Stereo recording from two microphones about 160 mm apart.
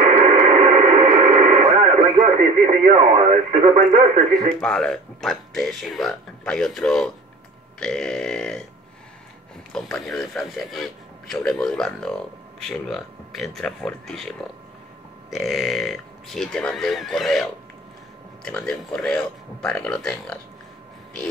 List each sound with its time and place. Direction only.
0.2 s radio: 45° right (ahead or behind)
4.5 s speech: 5° left (ahead or behind)
9.7 s speech: 5° left (ahead or behind)